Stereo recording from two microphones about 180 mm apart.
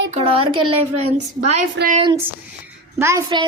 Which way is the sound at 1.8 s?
70° right (ahead or behind).